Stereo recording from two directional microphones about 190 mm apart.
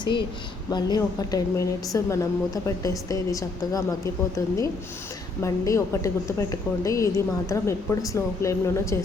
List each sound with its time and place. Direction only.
0.0 s a woman's voice: 25° left (ahead or behind)